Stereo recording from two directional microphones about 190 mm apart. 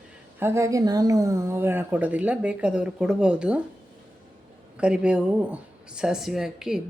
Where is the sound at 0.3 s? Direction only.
15° right (ahead or behind).